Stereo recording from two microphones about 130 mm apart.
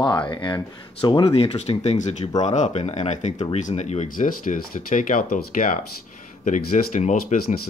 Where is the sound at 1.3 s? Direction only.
50° left (ahead or behind).